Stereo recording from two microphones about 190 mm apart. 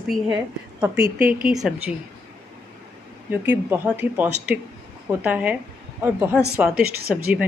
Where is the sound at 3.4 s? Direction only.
10° right (ahead or behind).